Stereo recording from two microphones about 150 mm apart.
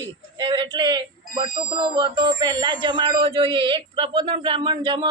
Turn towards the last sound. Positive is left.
turn(degrees=-35)  # may be behind; listen again after turning